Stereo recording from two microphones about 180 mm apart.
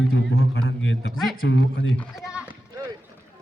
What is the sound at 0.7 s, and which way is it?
Speech, 90° left.